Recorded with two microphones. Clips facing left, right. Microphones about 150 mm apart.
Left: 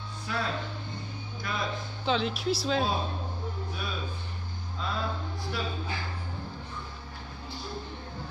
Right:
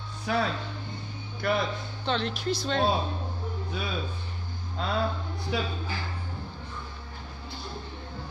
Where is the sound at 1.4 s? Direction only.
70° right (ahead or behind).